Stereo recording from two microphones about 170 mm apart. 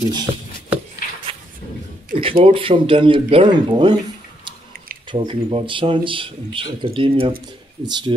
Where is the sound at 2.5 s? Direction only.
30° right (ahead or behind).